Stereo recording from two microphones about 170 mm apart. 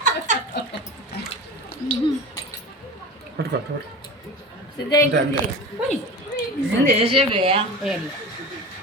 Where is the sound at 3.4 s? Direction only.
75° right (ahead or behind).